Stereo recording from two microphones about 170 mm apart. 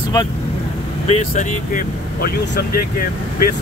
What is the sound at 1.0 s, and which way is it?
Speech, 40° left (ahead or behind).